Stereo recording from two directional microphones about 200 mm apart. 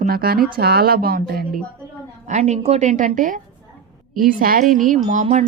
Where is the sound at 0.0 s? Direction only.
50° right (ahead or behind).